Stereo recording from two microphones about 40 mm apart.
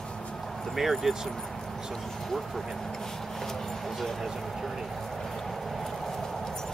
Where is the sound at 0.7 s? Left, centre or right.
Centre.